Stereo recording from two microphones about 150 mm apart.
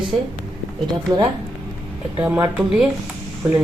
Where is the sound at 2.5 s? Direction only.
5° right (ahead or behind).